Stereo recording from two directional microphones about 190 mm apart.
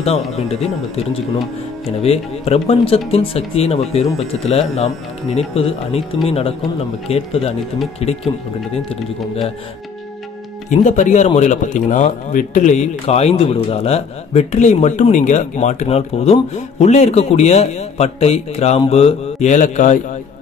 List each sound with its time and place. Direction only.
0.0 s speech: 30° left (ahead or behind)
1.9 s a man's voice: 30° left (ahead or behind)
10.7 s speech: 40° left (ahead or behind)